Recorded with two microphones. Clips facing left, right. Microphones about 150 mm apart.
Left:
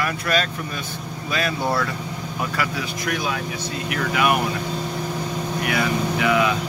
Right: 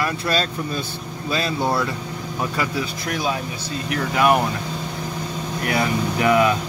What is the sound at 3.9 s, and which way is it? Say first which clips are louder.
Speech: right 3 dB; 35° right (ahead or behind).